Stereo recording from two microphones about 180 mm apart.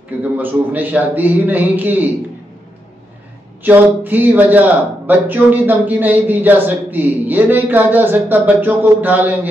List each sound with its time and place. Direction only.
0.2 s speech: 10° right (ahead or behind)
3.6 s speech: 10° right (ahead or behind)